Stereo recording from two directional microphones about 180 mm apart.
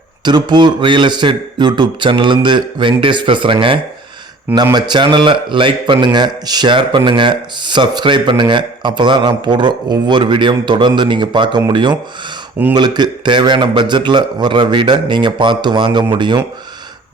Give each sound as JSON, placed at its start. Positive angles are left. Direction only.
{"t": 0.3, "sound": "speech", "side_deg": -25}